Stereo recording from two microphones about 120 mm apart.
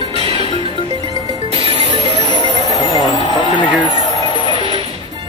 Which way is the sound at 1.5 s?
60° right (ahead or behind).